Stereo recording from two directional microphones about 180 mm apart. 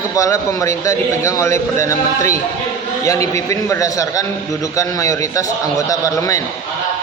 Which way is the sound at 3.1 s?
15° left (ahead or behind).